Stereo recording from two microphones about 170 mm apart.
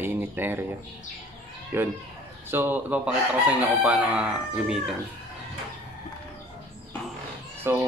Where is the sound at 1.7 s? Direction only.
15° right (ahead or behind).